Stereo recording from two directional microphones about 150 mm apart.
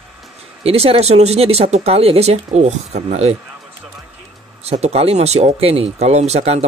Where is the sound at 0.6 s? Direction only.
40° right (ahead or behind).